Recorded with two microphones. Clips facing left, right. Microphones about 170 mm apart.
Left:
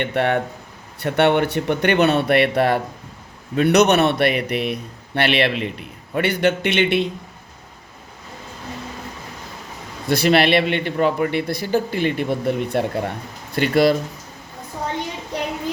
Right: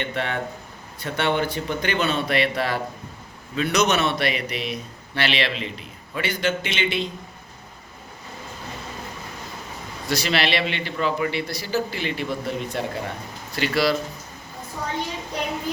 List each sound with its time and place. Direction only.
0.0 s a man's voice: 60° left (ahead or behind)
10.1 s a man's voice: 55° left (ahead or behind)